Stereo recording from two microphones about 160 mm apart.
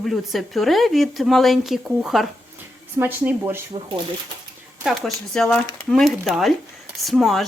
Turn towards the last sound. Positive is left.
turn(degrees=0)  # may be behind; listen again after turning